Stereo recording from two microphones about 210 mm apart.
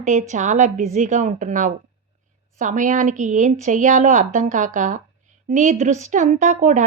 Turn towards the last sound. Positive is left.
turn(degrees=-35)  # may be behind; listen again after turning